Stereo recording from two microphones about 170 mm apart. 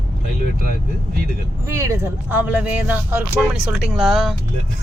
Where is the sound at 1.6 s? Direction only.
15° right (ahead or behind); by 4.3 s centre (ahead or behind).